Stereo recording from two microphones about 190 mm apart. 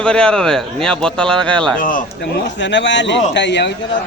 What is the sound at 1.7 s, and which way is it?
Speech, 45° left (ahead or behind).